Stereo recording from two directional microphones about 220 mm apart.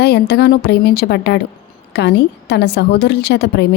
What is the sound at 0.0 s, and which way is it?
Speech, 50° left (ahead or behind).